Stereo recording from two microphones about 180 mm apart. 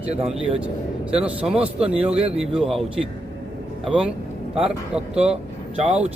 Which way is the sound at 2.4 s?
5° right (ahead or behind).